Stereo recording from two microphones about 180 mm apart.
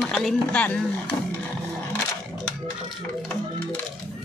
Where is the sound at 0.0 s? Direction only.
Centre (ahead or behind).